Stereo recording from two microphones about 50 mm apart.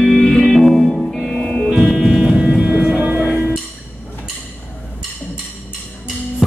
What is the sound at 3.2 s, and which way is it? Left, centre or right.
Music, right.